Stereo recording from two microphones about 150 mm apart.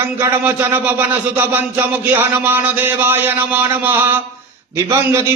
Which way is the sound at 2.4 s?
15° right (ahead or behind).